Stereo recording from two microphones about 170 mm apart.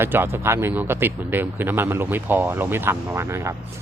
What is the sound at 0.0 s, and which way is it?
Speech, 15° right (ahead or behind).